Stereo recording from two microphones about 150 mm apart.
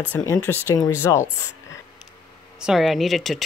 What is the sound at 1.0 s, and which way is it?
Speech, 25° left (ahead or behind).